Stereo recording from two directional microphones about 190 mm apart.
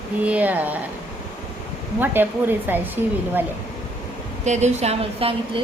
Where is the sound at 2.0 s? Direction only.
10° right (ahead or behind).